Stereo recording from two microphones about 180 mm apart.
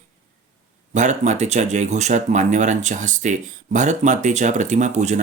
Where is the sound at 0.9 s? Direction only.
40° right (ahead or behind).